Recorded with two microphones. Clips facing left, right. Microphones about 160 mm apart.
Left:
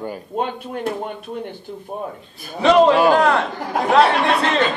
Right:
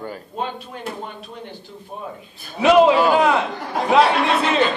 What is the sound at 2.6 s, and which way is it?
Speech, 5° right (ahead or behind).